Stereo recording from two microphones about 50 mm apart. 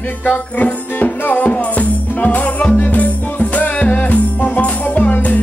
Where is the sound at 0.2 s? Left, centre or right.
Left.